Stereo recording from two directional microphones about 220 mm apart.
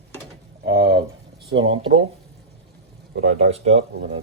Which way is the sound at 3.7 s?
60° right (ahead or behind).